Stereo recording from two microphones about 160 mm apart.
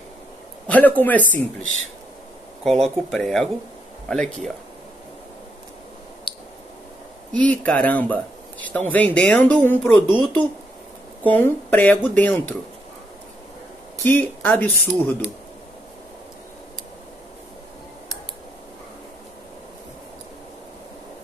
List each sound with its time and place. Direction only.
0.7 s speech: 10° left (ahead or behind)
2.6 s speech: centre (ahead or behind)
6.3 s clicking: 30° left (ahead or behind)
7.3 s speech: 10° left (ahead or behind)
11.2 s speech: 10° left (ahead or behind)
14.0 s speech: 10° left (ahead or behind)